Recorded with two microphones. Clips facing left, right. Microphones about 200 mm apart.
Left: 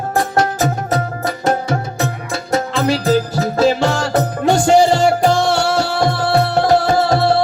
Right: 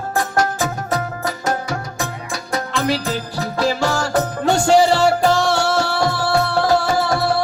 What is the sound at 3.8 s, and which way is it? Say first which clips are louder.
Music: left 3 dB; 20° left (ahead or behind).